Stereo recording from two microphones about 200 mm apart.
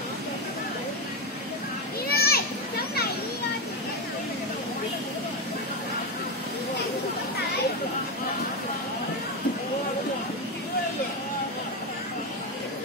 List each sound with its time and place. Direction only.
2.0 s children playing: 50° left (ahead or behind)